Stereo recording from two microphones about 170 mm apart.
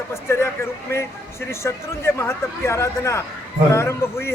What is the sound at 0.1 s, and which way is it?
Speech, 15° left (ahead or behind).